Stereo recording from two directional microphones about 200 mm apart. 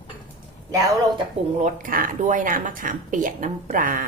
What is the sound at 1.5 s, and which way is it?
A woman's voice, 40° right (ahead or behind).